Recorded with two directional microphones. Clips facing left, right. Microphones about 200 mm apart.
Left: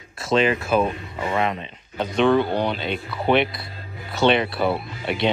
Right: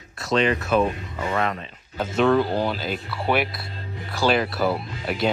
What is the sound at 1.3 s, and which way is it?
Speech, 20° left (ahead or behind).